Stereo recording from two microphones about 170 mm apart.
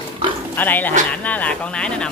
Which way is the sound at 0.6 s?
10° left (ahead or behind).